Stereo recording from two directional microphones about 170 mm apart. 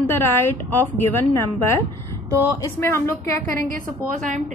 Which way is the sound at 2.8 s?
15° left (ahead or behind).